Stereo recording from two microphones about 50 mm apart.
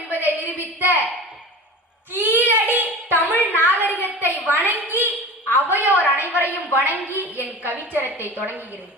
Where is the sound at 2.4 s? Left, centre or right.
Right.